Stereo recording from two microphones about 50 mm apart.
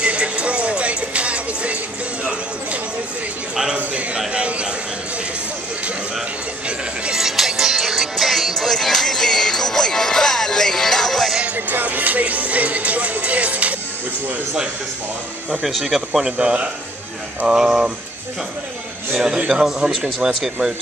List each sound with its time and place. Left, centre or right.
0.0 s music: right
3.7 s a sound: right
7.1 s music: centre
11.5 s music: right
15.6 s speech: centre
19.1 s speech: centre